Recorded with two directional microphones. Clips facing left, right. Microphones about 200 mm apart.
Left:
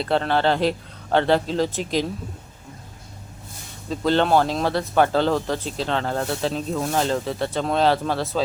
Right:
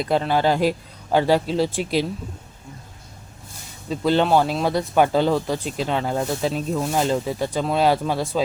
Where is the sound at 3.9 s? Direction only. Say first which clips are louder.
Right 1 dB; 10° right (ahead or behind).